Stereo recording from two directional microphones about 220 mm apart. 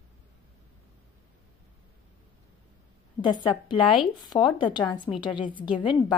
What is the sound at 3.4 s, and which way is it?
A woman's voice, 20° left (ahead or behind).